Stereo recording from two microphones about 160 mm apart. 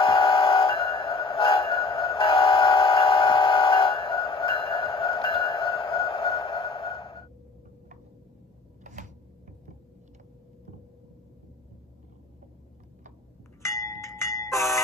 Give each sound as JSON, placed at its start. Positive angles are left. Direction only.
{"t": 0.0, "sound": "train", "side_deg": 35}
{"t": 8.8, "sound": "a sound", "side_deg": -55}
{"t": 13.7, "sound": "wind chime", "side_deg": 20}
{"t": 14.0, "sound": "train", "side_deg": 20}